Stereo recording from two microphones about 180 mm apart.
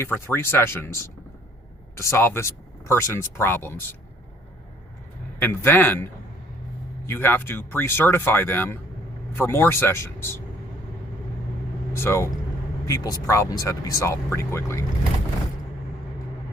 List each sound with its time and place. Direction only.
0.0 s speech: 10° left (ahead or behind)
5.4 s speech: 10° left (ahead or behind)
7.1 s speech: 10° left (ahead or behind)
11.9 s speech: 15° left (ahead or behind)